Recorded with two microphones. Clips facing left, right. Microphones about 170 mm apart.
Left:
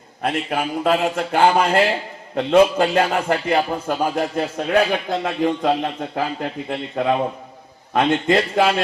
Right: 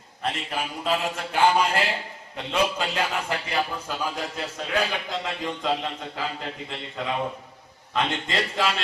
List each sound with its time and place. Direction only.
0.2 s a man's voice: 55° left (ahead or behind)